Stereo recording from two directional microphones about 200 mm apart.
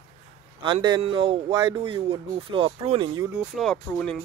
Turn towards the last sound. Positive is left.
turn(degrees=5)  # may be behind; listen again after turning